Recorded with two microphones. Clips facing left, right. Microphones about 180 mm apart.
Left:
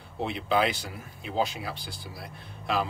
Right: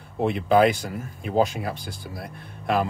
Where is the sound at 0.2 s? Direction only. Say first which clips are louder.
Right 8 dB; 50° right (ahead or behind).